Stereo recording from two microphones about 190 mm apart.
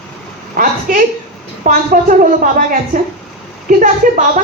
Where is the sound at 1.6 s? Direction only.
45° right (ahead or behind).